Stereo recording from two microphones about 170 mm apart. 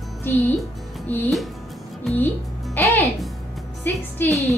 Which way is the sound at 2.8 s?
10° left (ahead or behind).